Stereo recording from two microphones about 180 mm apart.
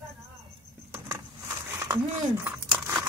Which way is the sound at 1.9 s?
15° right (ahead or behind).